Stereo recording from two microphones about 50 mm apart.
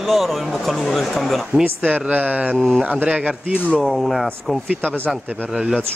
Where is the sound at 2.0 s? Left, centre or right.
Right.